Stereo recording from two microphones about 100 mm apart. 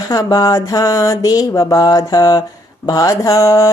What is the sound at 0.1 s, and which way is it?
A woman's voice, 40° left (ahead or behind).